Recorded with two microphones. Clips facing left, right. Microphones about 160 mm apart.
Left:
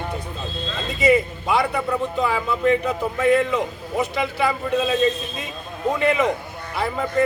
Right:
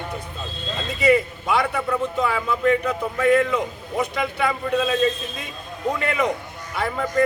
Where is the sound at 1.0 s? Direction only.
Centre (ahead or behind).